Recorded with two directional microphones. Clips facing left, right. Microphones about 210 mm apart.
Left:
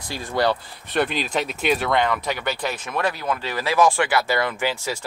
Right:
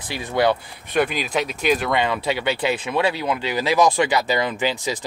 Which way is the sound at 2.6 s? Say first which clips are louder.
Right 5 dB; 15° right (ahead or behind).